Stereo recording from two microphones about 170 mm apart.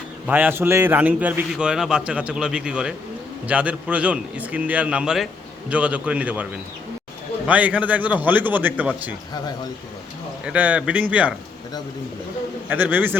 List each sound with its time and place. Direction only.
0.3 s a man's voice: 10° right (ahead or behind)
10.4 s a man's voice: 10° right (ahead or behind)
12.6 s a man's voice: 10° right (ahead or behind)